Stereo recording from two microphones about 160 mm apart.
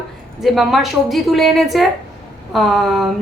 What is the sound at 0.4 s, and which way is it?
A woman's voice, centre (ahead or behind).